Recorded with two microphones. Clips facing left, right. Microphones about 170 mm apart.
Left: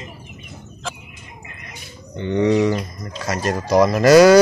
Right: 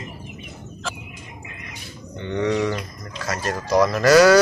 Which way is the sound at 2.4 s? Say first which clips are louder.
Left 5 dB; 20° left (ahead or behind).